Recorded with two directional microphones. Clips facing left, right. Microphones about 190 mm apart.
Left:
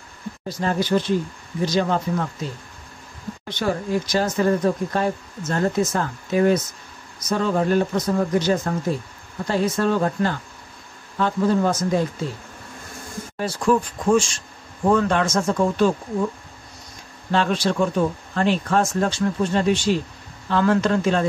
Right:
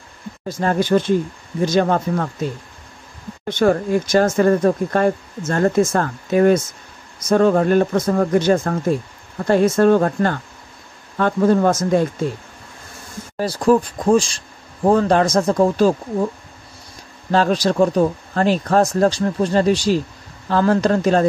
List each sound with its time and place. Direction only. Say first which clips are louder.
0.5 s speech: right 4 dB; 50° right (ahead or behind)
3.4 s speech: right 8 dB; 50° right (ahead or behind)
13.4 s speech: right 5 dB; 35° right (ahead or behind)
17.3 s speech: right 4 dB; 40° right (ahead or behind)